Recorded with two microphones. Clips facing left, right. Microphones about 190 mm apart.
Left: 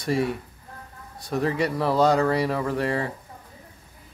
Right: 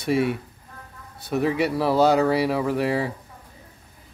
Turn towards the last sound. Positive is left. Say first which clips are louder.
# right 2 dB
turn(degrees=-5)  # may be behind; listen again after turning